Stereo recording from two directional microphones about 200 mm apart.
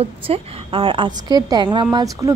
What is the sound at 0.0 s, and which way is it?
A woman's voice, 30° right (ahead or behind).